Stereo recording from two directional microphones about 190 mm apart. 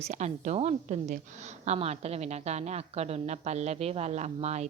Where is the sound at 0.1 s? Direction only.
35° right (ahead or behind).